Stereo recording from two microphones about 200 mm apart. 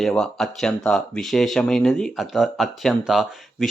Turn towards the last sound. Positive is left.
turn(degrees=0)  # may be behind; listen again after turning